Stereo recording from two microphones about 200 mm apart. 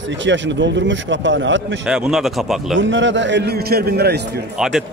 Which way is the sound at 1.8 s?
5° right (ahead or behind).